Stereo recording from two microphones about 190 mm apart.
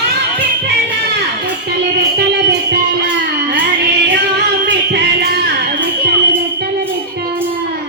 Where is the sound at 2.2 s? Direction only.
60° right (ahead or behind).